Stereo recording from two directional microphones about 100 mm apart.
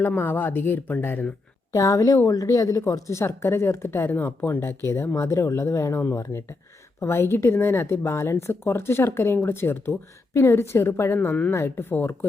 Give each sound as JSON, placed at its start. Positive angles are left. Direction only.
{"t": 0.0, "sound": "a woman's voice", "side_deg": 20}
{"t": 1.7, "sound": "a woman's voice", "side_deg": 35}